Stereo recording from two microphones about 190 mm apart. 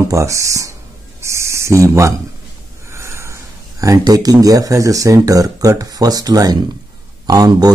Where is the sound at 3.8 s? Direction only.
20° right (ahead or behind).